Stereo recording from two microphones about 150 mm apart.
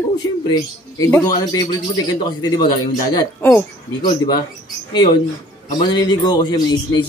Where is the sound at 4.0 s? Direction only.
30° left (ahead or behind).